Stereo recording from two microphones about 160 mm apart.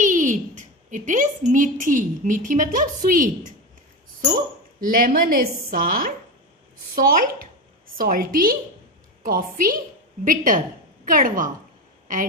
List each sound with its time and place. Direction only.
0.0 s a sound: 55° right (ahead or behind)
3.1 s speech: 55° right (ahead or behind)
4.7 s speech: 60° right (ahead or behind)